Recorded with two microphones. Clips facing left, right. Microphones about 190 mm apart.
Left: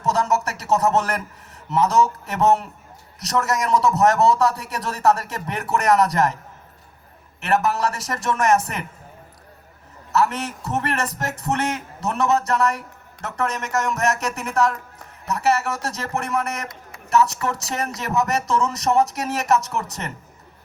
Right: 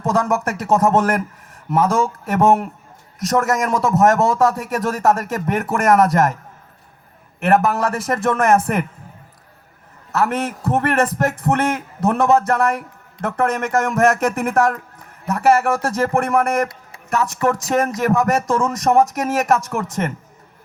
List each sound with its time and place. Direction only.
0.0 s a man's voice: 50° right (ahead or behind)
7.3 s a man's voice: 55° right (ahead or behind)
10.1 s a man's voice: 55° right (ahead or behind)